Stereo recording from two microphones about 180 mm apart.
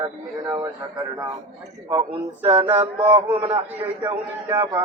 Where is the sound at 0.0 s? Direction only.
20° right (ahead or behind).